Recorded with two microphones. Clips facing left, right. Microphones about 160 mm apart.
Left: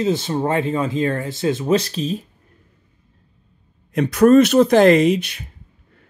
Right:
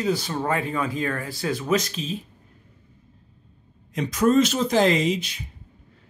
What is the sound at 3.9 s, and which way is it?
Speech, 60° left (ahead or behind).